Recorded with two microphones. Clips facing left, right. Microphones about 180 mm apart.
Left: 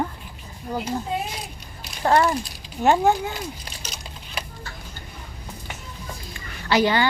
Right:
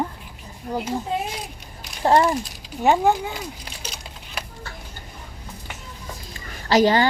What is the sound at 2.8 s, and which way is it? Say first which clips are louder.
Speech: even; centre (ahead or behind).